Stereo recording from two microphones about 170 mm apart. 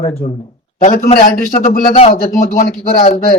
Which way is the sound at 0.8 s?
45° left (ahead or behind).